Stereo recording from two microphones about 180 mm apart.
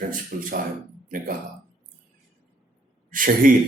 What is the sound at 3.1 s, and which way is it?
Speech, 50° right (ahead or behind).